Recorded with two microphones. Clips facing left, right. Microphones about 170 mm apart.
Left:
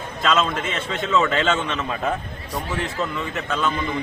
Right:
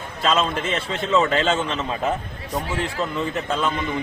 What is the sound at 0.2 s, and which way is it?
A man's voice, 30° right (ahead or behind).